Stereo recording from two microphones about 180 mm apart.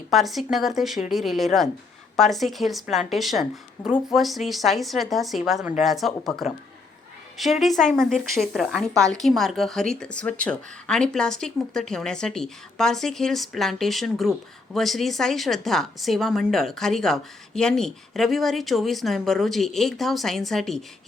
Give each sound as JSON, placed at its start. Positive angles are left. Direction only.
{"t": 0.1, "sound": "a woman's voice", "side_deg": 0}
{"t": 7.6, "sound": "a woman's voice", "side_deg": 0}